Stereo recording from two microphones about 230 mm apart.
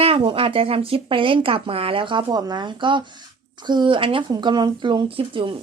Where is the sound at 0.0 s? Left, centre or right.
Right.